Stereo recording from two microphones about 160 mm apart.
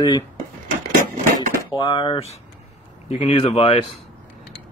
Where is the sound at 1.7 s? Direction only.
30° left (ahead or behind).